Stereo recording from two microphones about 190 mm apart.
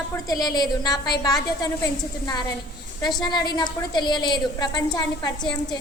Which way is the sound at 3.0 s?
20° left (ahead or behind).